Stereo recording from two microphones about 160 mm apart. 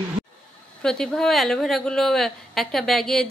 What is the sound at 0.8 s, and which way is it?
A woman's voice, 5° left (ahead or behind).